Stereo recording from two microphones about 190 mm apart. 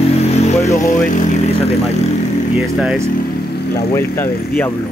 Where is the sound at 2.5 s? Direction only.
Centre (ahead or behind).